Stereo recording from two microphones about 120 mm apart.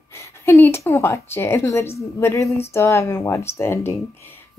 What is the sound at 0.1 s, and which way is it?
Speech, 20° left (ahead or behind).